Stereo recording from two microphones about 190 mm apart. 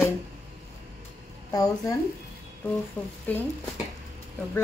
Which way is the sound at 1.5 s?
20° left (ahead or behind).